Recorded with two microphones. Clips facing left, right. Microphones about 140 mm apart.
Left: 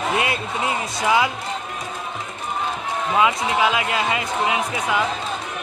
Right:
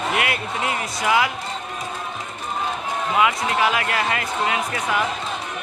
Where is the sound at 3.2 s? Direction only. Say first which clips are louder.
Left 1 dB; 20° left (ahead or behind).